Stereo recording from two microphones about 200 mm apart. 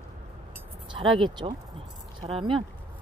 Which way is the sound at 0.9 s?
25° right (ahead or behind).